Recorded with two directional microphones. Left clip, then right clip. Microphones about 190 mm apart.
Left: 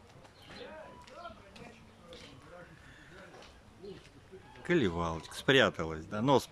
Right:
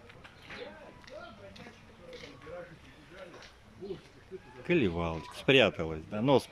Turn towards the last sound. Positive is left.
turn(degrees=-5)  # may be behind; listen again after turning